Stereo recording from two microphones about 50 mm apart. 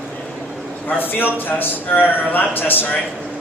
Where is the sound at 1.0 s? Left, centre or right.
Left.